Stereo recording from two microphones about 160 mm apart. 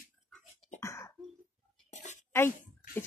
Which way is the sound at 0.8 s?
20° left (ahead or behind).